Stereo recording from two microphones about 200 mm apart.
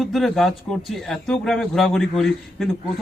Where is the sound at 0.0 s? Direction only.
Centre (ahead or behind).